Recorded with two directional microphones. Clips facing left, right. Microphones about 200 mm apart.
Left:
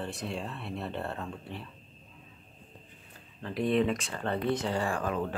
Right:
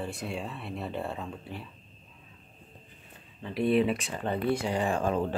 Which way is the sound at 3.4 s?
5° right (ahead or behind).